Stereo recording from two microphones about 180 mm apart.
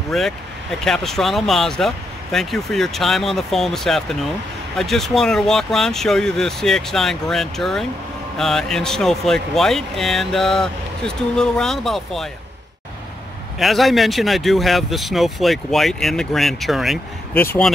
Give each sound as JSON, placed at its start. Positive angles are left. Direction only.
{"t": 0.1, "sound": "speech", "side_deg": 0}
{"t": 13.6, "sound": "speech", "side_deg": 0}
{"t": 17.4, "sound": "speech", "side_deg": 10}